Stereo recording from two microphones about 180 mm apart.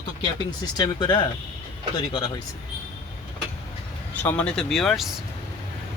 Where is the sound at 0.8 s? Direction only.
25° left (ahead or behind).